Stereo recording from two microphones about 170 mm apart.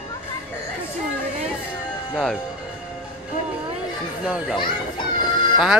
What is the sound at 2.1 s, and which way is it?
Speech, centre (ahead or behind).